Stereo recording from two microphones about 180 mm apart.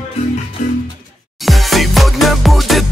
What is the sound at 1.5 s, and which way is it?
Music, centre (ahead or behind).